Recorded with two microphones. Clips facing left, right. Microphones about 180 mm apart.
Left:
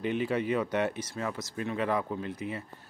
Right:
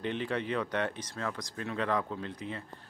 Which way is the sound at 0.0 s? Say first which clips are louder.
Left 4 dB; 10° left (ahead or behind).